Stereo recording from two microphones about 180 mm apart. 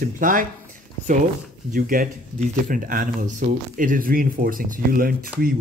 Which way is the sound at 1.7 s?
50° right (ahead or behind).